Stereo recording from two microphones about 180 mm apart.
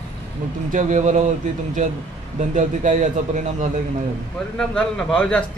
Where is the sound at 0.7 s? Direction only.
45° right (ahead or behind).